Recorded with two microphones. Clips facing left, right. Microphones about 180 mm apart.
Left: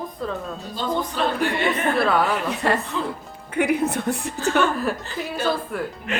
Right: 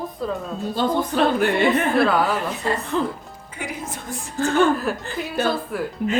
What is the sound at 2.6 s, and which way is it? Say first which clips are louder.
A woman's voice: right 1 dB; 70° left (ahead or behind).